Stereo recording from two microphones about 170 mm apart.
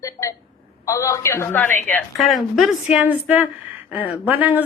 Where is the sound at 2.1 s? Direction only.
Centre (ahead or behind).